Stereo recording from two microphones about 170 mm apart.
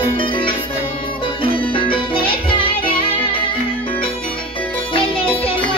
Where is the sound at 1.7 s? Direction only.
30° left (ahead or behind).